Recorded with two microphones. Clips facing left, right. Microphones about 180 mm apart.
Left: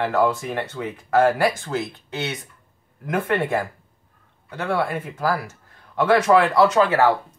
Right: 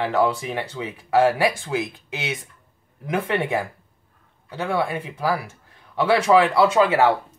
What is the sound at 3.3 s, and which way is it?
Speech, 10° right (ahead or behind).